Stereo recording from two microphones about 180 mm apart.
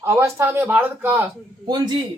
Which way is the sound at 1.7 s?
25° right (ahead or behind).